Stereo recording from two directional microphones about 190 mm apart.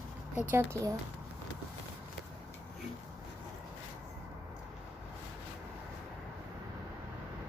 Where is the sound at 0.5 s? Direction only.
15° right (ahead or behind).